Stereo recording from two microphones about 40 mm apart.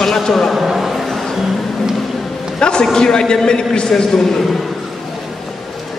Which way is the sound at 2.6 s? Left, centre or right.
Centre.